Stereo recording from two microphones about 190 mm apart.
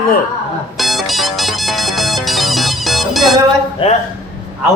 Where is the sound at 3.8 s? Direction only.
30° left (ahead or behind).